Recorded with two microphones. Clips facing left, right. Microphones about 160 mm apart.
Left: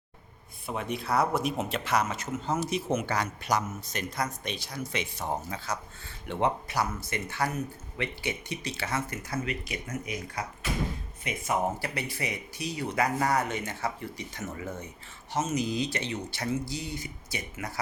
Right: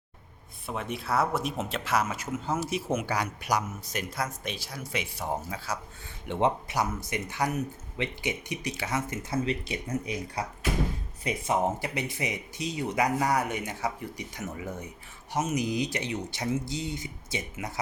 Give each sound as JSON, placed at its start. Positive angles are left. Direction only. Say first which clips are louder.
{"t": 0.7, "sound": "speech", "louder": "left 1 dB", "side_deg": 0}
{"t": 6.2, "sound": "speech", "louder": "right 2 dB", "side_deg": -20}
{"t": 11.5, "sound": "speech", "louder": "right 1 dB", "side_deg": -20}